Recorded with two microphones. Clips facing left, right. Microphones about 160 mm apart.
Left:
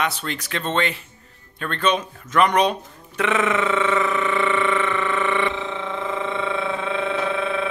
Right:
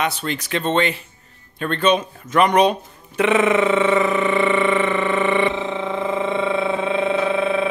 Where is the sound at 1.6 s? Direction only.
10° right (ahead or behind).